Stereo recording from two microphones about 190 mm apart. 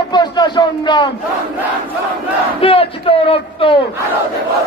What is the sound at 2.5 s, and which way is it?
Crowd, 30° left (ahead or behind).